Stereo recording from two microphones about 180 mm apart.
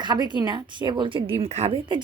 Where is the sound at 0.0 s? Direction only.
25° right (ahead or behind).